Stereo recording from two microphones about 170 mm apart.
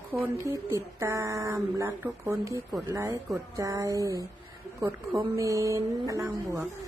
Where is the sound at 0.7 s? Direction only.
15° right (ahead or behind).